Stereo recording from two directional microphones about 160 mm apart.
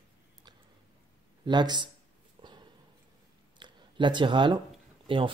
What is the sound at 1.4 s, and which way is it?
Speech, 25° right (ahead or behind).